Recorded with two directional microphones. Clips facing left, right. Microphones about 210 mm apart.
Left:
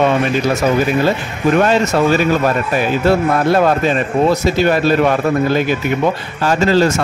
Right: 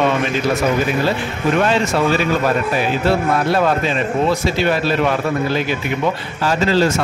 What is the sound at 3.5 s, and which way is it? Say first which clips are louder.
A man's voice: left 3 dB; 45° left (ahead or behind).